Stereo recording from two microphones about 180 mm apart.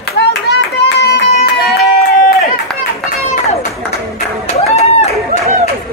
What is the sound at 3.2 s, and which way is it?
Run, 35° left (ahead or behind).